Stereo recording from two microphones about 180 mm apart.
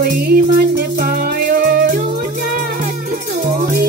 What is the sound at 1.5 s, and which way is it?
Music, 55° right (ahead or behind).